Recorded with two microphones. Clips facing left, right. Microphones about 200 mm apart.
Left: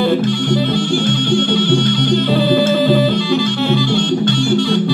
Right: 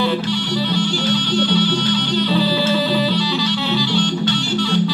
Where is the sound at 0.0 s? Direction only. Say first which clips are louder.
Left 5 dB; 50° left (ahead or behind).